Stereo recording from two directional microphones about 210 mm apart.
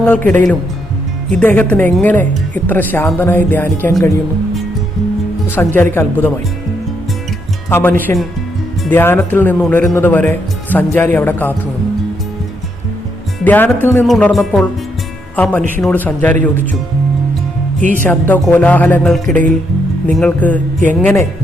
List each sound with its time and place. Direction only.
0.3 s speech: 10° left (ahead or behind)
5.5 s speech: 10° left (ahead or behind)
7.7 s speech: 10° left (ahead or behind)
13.4 s speech: 10° left (ahead or behind)
14.0 s music: 5° left (ahead or behind)
15.8 s speech: 5° left (ahead or behind)
17.7 s speech: 40° right (ahead or behind)
18.0 s speech: 5° left (ahead or behind)